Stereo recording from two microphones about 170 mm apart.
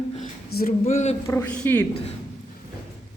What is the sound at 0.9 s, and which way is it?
Speech, 45° left (ahead or behind).